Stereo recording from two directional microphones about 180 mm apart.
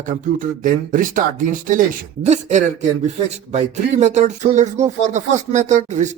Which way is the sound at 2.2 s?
40° right (ahead or behind).